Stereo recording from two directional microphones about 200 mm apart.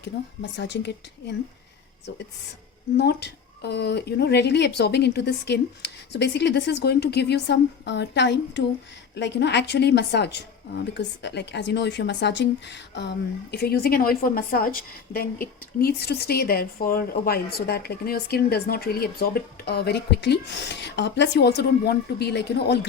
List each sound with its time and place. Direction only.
0.5 s speech: 60° left (ahead or behind)
3.0 s a woman's voice: 55° left (ahead or behind)